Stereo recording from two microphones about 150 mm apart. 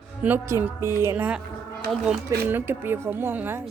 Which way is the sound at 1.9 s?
Centre (ahead or behind).